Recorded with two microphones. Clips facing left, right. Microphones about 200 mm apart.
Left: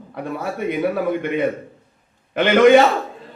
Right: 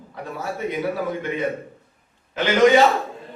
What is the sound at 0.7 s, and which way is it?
A man's voice, 60° left (ahead or behind).